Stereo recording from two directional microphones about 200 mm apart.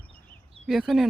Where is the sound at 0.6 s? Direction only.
Centre (ahead or behind).